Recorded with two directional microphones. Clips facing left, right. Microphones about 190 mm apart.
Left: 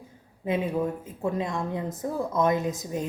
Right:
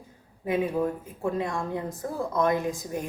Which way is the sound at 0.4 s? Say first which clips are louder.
Right 1 dB; 25° left (ahead or behind).